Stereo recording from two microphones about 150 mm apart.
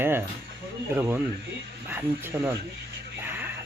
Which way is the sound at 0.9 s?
15° right (ahead or behind).